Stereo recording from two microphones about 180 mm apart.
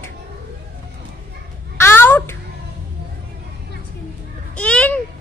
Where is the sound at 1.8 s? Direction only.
10° left (ahead or behind).